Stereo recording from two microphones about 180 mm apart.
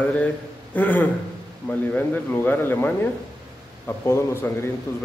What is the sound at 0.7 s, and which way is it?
Speech, 10° left (ahead or behind).